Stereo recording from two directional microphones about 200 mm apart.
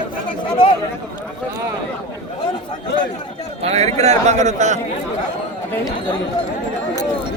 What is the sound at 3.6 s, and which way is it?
A man's voice, 30° right (ahead or behind).